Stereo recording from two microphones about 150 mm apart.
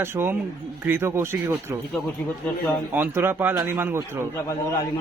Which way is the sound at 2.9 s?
15° right (ahead or behind).